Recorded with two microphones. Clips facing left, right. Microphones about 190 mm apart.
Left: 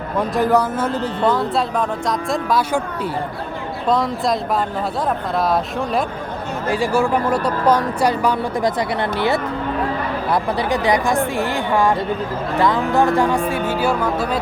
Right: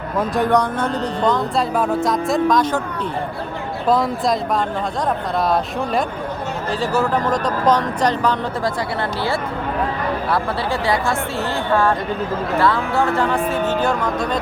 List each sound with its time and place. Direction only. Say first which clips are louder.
0.2 s a man's voice: left 1 dB; centre (ahead or behind)
5.4 s a man's voice: even; centre (ahead or behind)
6.7 s speech: left 2 dB; 10° left (ahead or behind)
10.3 s speech: left 2 dB; 20° left (ahead or behind)